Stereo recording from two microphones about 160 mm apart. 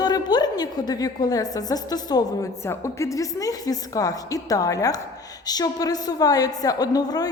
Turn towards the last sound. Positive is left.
turn(degrees=25)  # may be behind; listen again after turning